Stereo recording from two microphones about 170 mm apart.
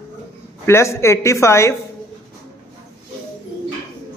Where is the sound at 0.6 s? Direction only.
15° left (ahead or behind).